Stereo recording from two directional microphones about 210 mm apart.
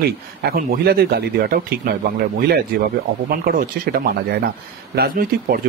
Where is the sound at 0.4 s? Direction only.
45° right (ahead or behind).